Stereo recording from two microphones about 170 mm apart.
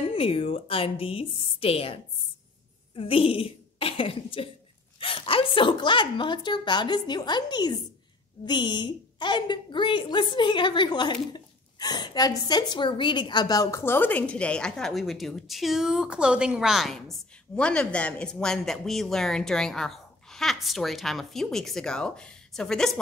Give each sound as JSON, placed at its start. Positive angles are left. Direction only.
{"t": 0.1, "sound": "a woman's voice", "side_deg": 35}